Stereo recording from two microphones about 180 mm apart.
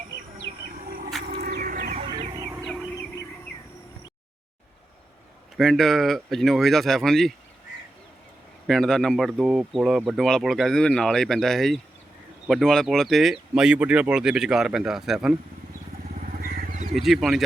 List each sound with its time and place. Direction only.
0.9 s bird: 55° right (ahead or behind)
2.0 s a sound: 30° right (ahead or behind)
5.5 s speech: centre (ahead or behind)
8.6 s speech: centre (ahead or behind)
16.4 s vehicle: 50° right (ahead or behind)
16.9 s speech: centre (ahead or behind)